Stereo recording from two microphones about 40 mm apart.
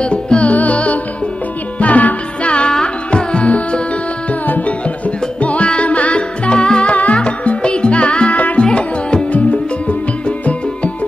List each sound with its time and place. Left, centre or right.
0.0 s music: left
8.4 s music: left
8.6 s music: left
9.3 s music: left